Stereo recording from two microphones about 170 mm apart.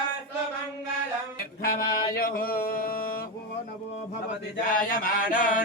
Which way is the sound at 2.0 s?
60° left (ahead or behind).